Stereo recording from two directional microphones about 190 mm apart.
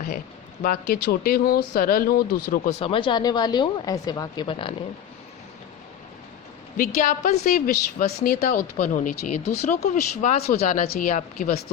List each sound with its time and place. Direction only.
0.6 s speech: 50° left (ahead or behind)
2.7 s speech: 30° left (ahead or behind)
6.7 s speech: 45° left (ahead or behind)
8.4 s speech: 35° left (ahead or behind)